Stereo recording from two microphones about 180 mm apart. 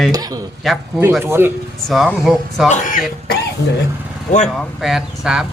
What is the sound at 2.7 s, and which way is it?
Speech, 45° left (ahead or behind).